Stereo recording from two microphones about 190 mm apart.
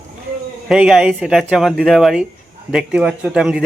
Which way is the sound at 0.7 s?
Centre (ahead or behind).